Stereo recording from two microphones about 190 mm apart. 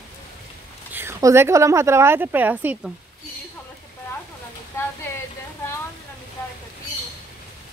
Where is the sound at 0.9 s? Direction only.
15° right (ahead or behind).